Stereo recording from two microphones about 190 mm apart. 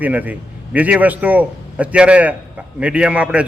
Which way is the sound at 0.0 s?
10° right (ahead or behind).